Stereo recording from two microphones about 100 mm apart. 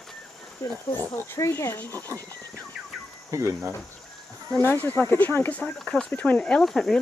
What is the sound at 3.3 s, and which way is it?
Speech, 30° right (ahead or behind).